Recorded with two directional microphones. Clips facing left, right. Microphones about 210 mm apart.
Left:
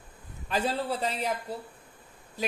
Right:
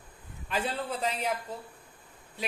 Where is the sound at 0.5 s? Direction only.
40° left (ahead or behind).